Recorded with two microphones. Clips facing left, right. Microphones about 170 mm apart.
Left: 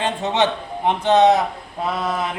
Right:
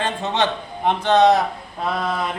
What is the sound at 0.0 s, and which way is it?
A man's voice, 15° left (ahead or behind).